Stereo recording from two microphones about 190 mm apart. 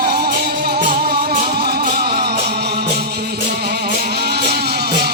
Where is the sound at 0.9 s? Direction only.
40° right (ahead or behind).